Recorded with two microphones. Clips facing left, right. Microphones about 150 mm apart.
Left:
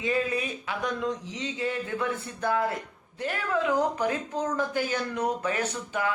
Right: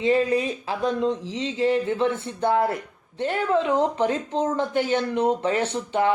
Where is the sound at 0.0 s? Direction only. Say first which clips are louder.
Right 7 dB; 30° right (ahead or behind).